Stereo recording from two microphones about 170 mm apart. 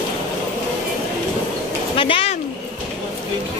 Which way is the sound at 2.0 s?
30° left (ahead or behind).